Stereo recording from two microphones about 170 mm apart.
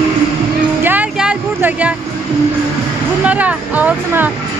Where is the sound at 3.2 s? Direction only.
10° right (ahead or behind).